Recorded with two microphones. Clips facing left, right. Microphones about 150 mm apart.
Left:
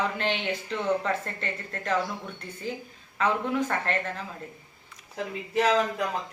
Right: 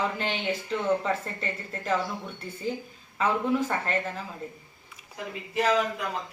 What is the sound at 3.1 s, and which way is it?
Speech, 5° right (ahead or behind).